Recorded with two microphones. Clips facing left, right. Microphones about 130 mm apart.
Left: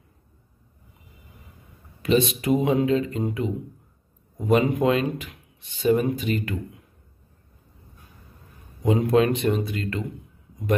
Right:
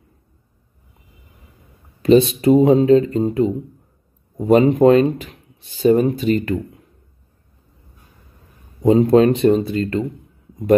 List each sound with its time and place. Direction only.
2.0 s speech: 30° right (ahead or behind)
8.8 s speech: 30° right (ahead or behind)